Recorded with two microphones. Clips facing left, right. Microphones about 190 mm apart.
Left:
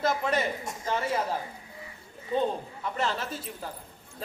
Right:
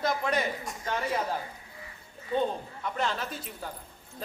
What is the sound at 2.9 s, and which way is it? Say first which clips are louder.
Speech: left 1 dB; 5° left (ahead or behind).